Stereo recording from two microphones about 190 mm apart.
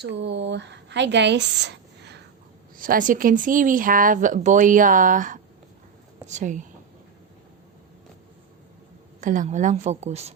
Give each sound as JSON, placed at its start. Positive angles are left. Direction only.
{"t": 0.0, "sound": "a woman's voice", "side_deg": -65}
{"t": 2.7, "sound": "a woman's voice", "side_deg": -45}
{"t": 9.2, "sound": "a woman's voice", "side_deg": -45}